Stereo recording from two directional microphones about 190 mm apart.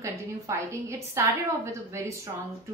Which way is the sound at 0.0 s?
15° right (ahead or behind).